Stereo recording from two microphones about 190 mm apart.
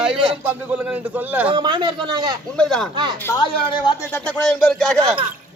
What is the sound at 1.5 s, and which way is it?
Speech, 25° right (ahead or behind).